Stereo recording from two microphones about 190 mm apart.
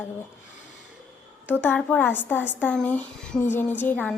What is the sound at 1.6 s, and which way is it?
A woman's voice, 10° left (ahead or behind).